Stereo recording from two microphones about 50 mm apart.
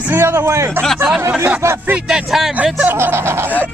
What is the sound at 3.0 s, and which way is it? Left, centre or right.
Speech, right.